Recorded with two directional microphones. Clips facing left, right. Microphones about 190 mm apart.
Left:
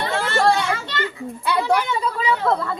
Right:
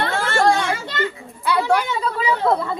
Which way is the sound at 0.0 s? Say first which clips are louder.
Right 1 dB; 50° right (ahead or behind).